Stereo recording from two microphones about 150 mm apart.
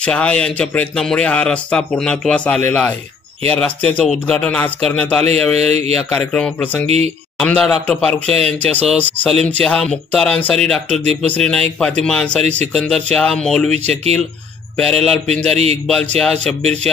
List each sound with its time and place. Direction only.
0.0 s speech: 5° left (ahead or behind)
5.6 s speech: 45° right (ahead or behind)
6.1 s speech: 10° left (ahead or behind)
15.5 s speech: 45° right (ahead or behind)
15.9 s speech: 5° left (ahead or behind)